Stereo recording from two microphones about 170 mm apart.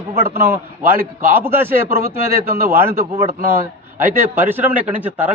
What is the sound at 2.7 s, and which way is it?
Speech, 15° right (ahead or behind).